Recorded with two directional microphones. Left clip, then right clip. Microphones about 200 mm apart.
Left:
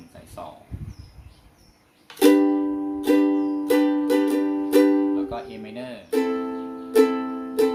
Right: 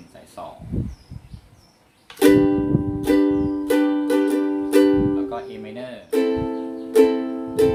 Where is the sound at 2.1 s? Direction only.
Centre (ahead or behind).